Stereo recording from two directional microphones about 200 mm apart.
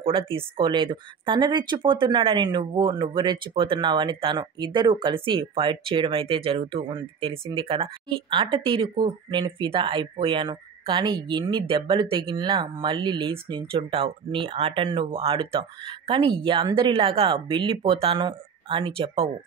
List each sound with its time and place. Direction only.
0.0 s speech: 25° right (ahead or behind)